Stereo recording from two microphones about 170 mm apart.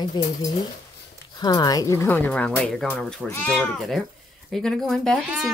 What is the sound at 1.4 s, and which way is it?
A woman's voice, 20° left (ahead or behind).